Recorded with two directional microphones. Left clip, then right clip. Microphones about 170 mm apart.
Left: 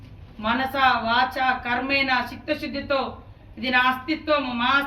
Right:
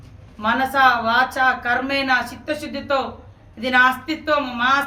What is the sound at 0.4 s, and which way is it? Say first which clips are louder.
Speech: right 5 dB; 20° right (ahead or behind).